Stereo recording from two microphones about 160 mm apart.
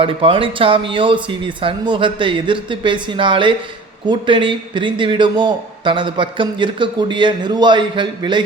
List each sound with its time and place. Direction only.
0.0 s a man's voice: 35° right (ahead or behind)